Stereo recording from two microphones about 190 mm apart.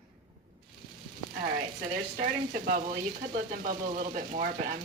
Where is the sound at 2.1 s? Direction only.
45° right (ahead or behind).